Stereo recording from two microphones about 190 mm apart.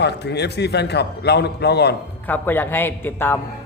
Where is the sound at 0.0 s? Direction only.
60° left (ahead or behind).